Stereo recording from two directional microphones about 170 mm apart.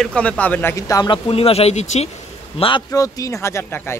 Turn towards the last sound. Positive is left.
turn(degrees=15)  # may be behind; listen again after turning